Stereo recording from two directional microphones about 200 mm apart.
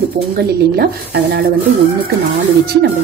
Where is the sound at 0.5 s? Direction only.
55° right (ahead or behind).